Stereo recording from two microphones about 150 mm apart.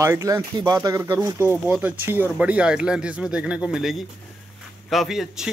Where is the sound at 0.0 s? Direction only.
20° right (ahead or behind).